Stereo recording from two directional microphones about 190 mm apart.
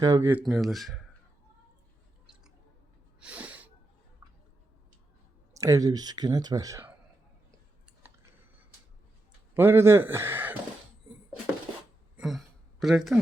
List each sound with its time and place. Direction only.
0.0 s speech: 15° right (ahead or behind); by 1.0 s centre (ahead or behind)
3.2 s sneeze: 5° right (ahead or behind)
4.2 s a sound: 15° right (ahead or behind)
5.5 s speech: 15° right (ahead or behind)
9.6 s speech: 10° right (ahead or behind)
12.1 s a sound: centre (ahead or behind)